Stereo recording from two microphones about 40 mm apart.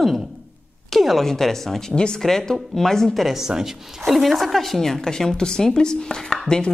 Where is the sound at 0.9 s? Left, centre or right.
Centre.